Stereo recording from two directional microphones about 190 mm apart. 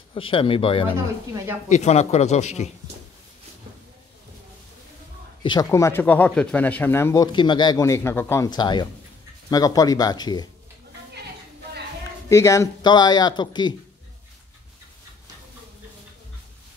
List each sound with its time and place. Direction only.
0.1 s speech: 25° left (ahead or behind)
5.4 s speech: 20° left (ahead or behind)
7.3 s speech: 25° left (ahead or behind)
12.3 s speech: 15° left (ahead or behind)